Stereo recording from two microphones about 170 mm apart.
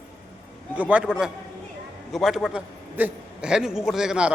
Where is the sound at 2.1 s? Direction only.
Centre (ahead or behind).